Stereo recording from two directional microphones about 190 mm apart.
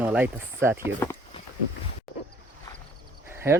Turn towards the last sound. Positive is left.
turn(degrees=-15)  # may be behind; listen again after turning